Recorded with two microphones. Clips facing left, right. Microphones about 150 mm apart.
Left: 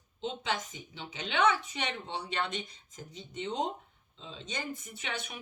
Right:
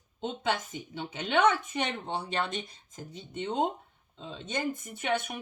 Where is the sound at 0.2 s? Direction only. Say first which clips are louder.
Right 3 dB; 50° right (ahead or behind).